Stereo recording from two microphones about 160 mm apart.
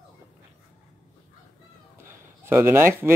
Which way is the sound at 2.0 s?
15° right (ahead or behind).